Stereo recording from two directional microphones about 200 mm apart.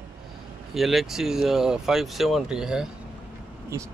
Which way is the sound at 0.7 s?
Centre (ahead or behind).